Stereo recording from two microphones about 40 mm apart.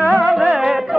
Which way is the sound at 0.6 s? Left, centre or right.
Centre.